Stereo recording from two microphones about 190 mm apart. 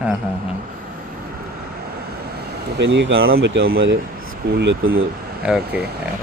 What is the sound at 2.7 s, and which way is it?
Speech, 70° right (ahead or behind).